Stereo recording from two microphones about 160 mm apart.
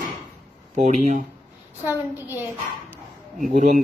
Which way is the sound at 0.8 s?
45° right (ahead or behind).